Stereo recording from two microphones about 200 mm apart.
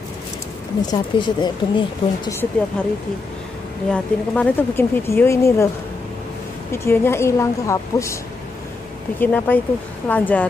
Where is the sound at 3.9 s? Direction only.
5° left (ahead or behind).